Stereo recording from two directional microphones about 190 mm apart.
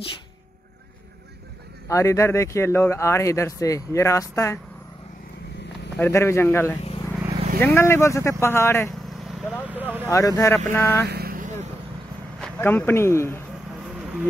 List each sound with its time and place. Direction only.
1.9 s speech: 15° left (ahead or behind)
5.9 s speech: 15° left (ahead or behind)
8.9 s vehicle: centre (ahead or behind)
10.0 s speech: 15° left (ahead or behind)
11.1 s vehicle: 55° right (ahead or behind)
12.4 s speech: 5° left (ahead or behind)
13.9 s music: 5° right (ahead or behind)